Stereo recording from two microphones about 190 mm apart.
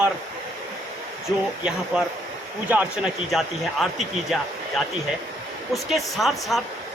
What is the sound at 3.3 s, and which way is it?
Speech, centre (ahead or behind).